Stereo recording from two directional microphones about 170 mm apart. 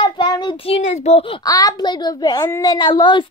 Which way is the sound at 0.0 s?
25° left (ahead or behind).